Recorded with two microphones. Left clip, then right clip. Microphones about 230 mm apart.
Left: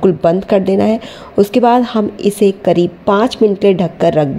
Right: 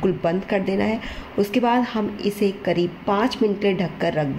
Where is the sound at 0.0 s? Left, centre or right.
Left.